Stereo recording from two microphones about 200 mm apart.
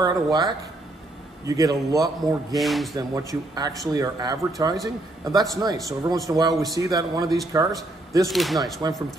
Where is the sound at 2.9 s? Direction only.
15° right (ahead or behind).